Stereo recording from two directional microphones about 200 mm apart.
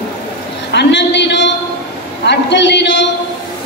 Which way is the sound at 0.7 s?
60° left (ahead or behind).